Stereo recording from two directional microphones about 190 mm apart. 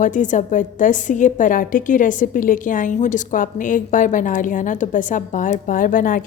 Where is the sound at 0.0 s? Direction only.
40° left (ahead or behind).